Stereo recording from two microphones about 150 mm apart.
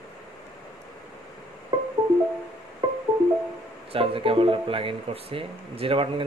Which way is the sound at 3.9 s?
40° right (ahead or behind).